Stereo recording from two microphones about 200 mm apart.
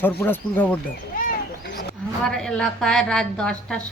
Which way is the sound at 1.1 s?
45° left (ahead or behind).